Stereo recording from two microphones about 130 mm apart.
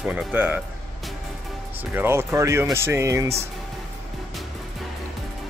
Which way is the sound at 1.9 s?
20° right (ahead or behind).